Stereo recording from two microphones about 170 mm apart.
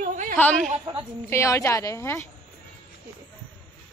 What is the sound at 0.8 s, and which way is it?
Speech, 30° right (ahead or behind).